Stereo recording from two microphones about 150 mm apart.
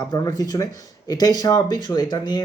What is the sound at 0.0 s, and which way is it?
Speech, 25° left (ahead or behind).